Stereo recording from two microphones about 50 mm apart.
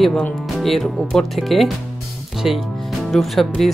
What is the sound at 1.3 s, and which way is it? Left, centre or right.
Speech, centre.